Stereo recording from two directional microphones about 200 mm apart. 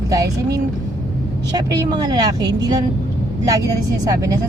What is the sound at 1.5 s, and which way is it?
Speech, 20° right (ahead or behind).